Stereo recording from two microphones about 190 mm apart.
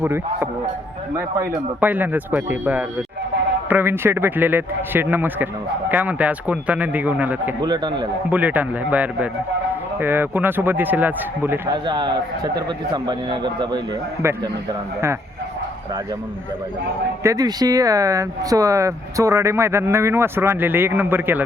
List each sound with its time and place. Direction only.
0.0 s speech: 10° right (ahead or behind)
7.6 s a man's voice: 20° right (ahead or behind)
8.3 s speech: 10° right (ahead or behind)
11.7 s a man's voice: 25° right (ahead or behind)
17.2 s speech: 20° right (ahead or behind)